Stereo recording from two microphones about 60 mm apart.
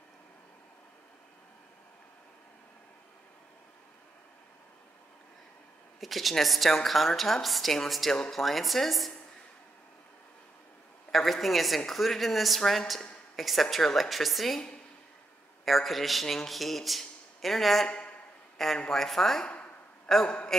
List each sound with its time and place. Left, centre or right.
5.9 s a man's voice: centre
11.1 s a man's voice: centre
15.6 s a man's voice: centre
17.8 s speech: left
18.8 s a woman's voice: centre